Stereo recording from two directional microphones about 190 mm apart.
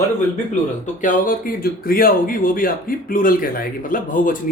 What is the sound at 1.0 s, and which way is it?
Speech, 45° left (ahead or behind).